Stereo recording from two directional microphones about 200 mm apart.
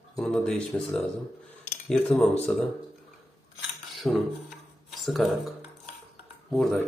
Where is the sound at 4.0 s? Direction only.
Centre (ahead or behind).